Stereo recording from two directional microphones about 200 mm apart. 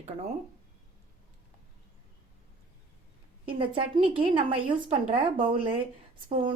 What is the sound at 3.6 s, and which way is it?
Speech, 25° right (ahead or behind).